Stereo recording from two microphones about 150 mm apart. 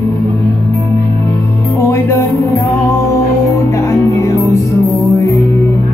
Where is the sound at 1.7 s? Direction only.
15° left (ahead or behind).